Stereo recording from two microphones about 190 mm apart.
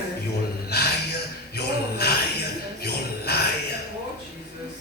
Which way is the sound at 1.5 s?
60° left (ahead or behind).